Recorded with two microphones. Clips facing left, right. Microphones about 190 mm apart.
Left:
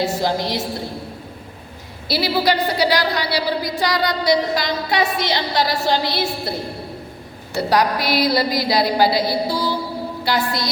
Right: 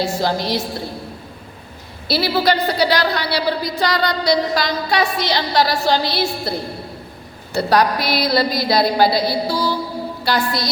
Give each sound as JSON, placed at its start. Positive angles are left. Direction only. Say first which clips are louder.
{"t": 0.0, "sound": "a woman's voice", "louder": "even", "side_deg": 20}
{"t": 2.0, "sound": "a woman's voice", "louder": "right 1 dB", "side_deg": 15}
{"t": 7.7, "sound": "a woman's voice", "louder": "right 1 dB", "side_deg": 15}